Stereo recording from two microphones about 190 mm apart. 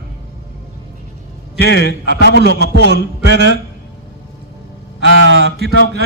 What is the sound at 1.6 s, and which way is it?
Speech, 60° left (ahead or behind).